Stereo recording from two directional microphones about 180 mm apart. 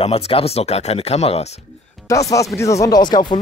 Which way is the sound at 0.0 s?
30° left (ahead or behind).